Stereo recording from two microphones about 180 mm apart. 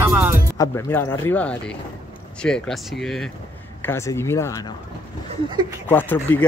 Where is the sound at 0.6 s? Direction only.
15° left (ahead or behind).